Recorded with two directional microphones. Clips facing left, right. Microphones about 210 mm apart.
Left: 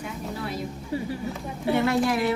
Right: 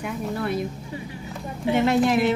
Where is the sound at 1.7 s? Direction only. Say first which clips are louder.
Right 3 dB; 20° right (ahead or behind).